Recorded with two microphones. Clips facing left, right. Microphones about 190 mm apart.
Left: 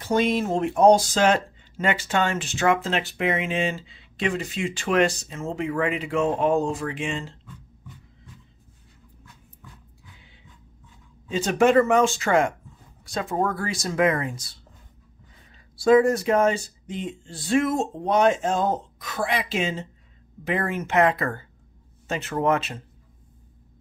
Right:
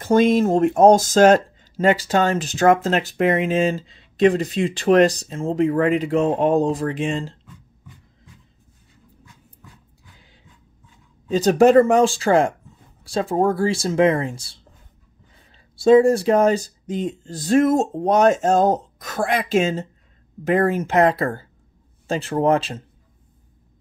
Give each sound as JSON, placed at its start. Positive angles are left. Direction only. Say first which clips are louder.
{"t": 0.0, "sound": "speech", "louder": "right 7 dB", "side_deg": -45}
{"t": 11.2, "sound": "speech", "louder": "right 6 dB", "side_deg": -40}
{"t": 15.7, "sound": "speech", "louder": "right 4 dB", "side_deg": -25}